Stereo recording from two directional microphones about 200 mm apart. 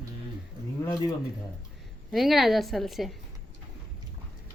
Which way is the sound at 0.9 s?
15° left (ahead or behind).